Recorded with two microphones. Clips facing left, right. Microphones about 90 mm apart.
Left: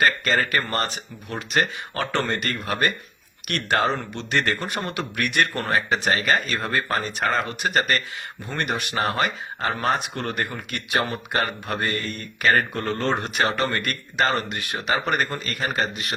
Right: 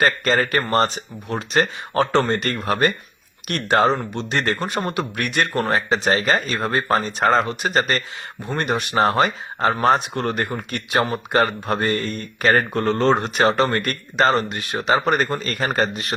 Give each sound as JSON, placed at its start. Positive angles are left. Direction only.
{"t": 0.0, "sound": "speech", "side_deg": -35}
{"t": 10.8, "sound": "speech", "side_deg": -20}
{"t": 12.8, "sound": "speech", "side_deg": -60}
{"t": 13.1, "sound": "speech", "side_deg": -25}
{"t": 15.4, "sound": "speech", "side_deg": -35}